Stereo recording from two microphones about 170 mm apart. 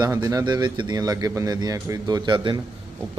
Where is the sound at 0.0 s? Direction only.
20° right (ahead or behind).